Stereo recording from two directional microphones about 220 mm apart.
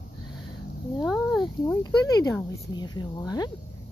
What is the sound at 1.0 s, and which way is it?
Speech, centre (ahead or behind).